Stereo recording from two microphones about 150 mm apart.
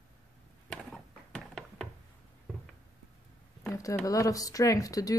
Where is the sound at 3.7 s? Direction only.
20° left (ahead or behind).